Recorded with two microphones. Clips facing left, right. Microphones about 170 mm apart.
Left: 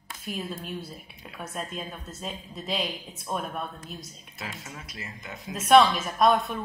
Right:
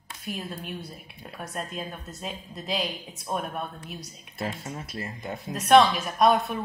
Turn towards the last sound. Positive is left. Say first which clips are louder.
# right 1 dB
turn(degrees=0)  # may be behind; listen again after turning